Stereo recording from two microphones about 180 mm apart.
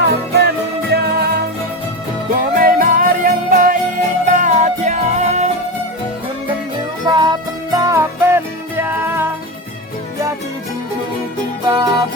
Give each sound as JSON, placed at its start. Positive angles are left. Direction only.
{"t": 0.1, "sound": "music", "side_deg": -65}
{"t": 7.1, "sound": "music", "side_deg": -25}
{"t": 11.7, "sound": "music", "side_deg": -20}